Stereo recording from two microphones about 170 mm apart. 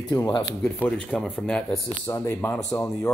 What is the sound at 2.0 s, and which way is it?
Speech, 15° left (ahead or behind).